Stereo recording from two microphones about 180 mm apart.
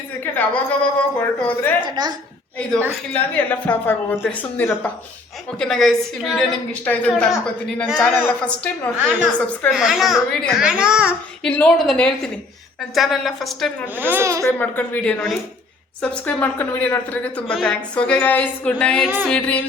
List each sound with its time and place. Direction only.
0.3 s a woman's voice: 10° left (ahead or behind)
1.8 s a woman's voice: 25° right (ahead or behind)
3.1 s a woman's voice: 10° left (ahead or behind)
13.9 s a child's voice: 10° right (ahead or behind)
14.4 s a woman's voice: 10° left (ahead or behind)